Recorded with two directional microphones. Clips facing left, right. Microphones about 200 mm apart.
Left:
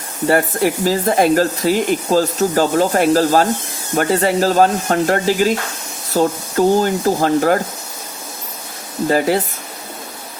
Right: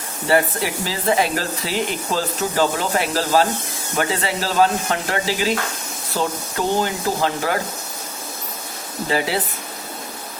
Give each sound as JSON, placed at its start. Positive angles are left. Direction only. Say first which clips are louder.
{"t": 0.3, "sound": "speech", "louder": "left 4 dB", "side_deg": 45}
{"t": 9.0, "sound": "speech", "louder": "left 6 dB", "side_deg": 45}